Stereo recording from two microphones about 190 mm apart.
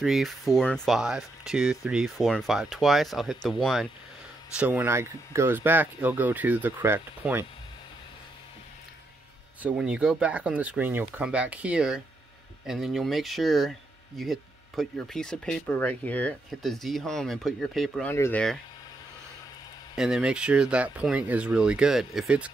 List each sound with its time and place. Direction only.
0.0 s speech: centre (ahead or behind)
9.6 s speech: 5° right (ahead or behind)
18.1 s speech: 15° left (ahead or behind)
20.0 s speech: 5° right (ahead or behind)